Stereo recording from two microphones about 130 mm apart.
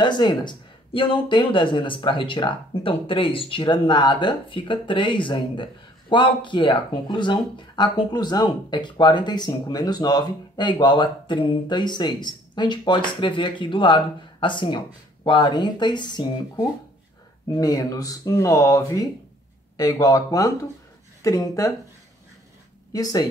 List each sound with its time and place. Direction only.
0.0 s speech: 35° left (ahead or behind)
22.9 s speech: 30° left (ahead or behind)